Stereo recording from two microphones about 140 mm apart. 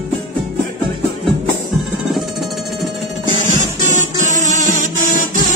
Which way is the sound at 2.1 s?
Centre (ahead or behind).